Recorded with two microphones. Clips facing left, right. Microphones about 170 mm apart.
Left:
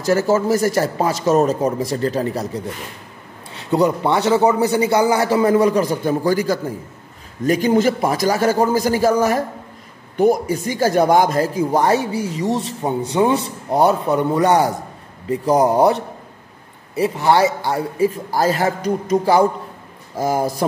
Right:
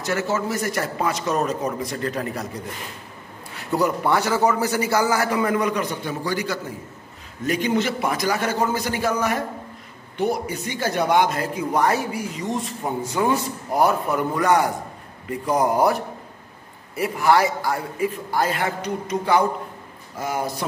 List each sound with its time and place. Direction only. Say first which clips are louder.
0.0 s a man's voice: left 7 dB; 35° left (ahead or behind)
3.5 s a man's voice: left 5 dB; 20° left (ahead or behind); by 20.4 s 35° left (ahead or behind)